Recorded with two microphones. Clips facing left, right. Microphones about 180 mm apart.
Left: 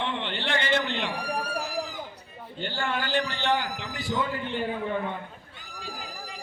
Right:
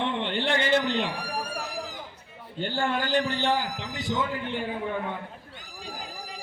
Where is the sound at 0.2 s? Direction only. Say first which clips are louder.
Right 4 dB; 45° right (ahead or behind).